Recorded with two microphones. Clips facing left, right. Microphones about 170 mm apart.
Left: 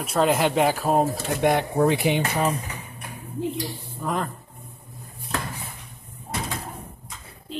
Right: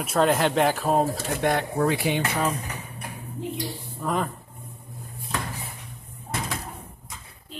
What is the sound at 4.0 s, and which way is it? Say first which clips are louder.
Speech: right 1 dB; centre (ahead or behind).